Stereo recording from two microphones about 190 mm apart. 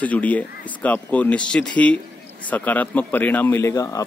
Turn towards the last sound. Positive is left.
turn(degrees=15)  # may be behind; listen again after turning